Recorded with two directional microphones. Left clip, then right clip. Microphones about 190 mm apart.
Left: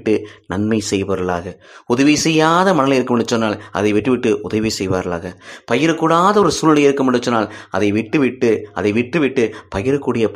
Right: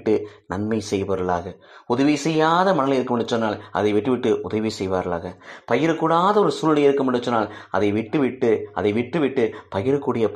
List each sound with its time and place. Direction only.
0.1 s speech: 30° left (ahead or behind)